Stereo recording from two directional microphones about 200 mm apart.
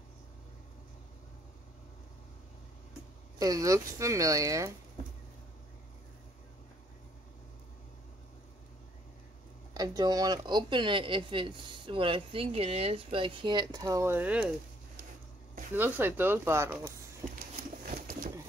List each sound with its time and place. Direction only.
3.3 s speech: 20° right (ahead or behind)
9.8 s speech: 20° right (ahead or behind)
15.7 s speech: 10° right (ahead or behind)
17.2 s a sound: 15° right (ahead or behind)
17.9 s pigeon: 45° right (ahead or behind)